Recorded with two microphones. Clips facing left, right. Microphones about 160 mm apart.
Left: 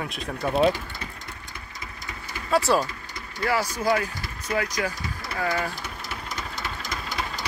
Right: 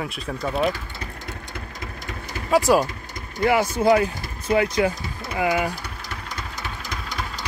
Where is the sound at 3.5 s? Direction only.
25° right (ahead or behind).